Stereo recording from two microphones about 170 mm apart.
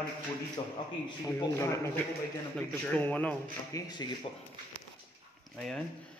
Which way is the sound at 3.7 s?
25° left (ahead or behind).